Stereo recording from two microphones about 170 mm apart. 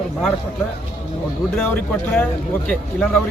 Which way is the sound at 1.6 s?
10° left (ahead or behind).